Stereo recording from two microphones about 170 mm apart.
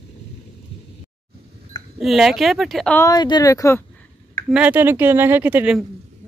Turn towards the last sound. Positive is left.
turn(degrees=-10)  # may be behind; listen again after turning